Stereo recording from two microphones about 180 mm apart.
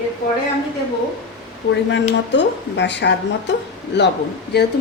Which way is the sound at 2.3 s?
75° left (ahead or behind).